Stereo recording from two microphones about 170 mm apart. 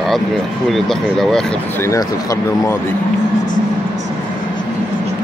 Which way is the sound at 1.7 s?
20° left (ahead or behind).